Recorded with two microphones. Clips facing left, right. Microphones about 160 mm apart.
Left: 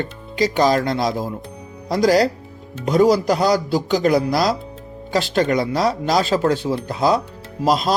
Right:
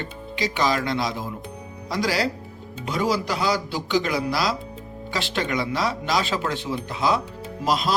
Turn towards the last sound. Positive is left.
turn(degrees=40)  # may be behind; listen again after turning